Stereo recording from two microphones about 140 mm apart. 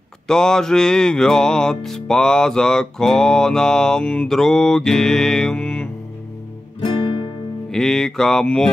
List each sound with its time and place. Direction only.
0.3 s music: 5° left (ahead or behind)
6.8 s guitar: 35° left (ahead or behind)
7.7 s music: 5° left (ahead or behind)